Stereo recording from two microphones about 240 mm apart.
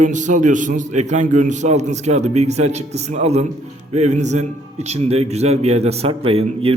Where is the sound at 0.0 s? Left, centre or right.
Right.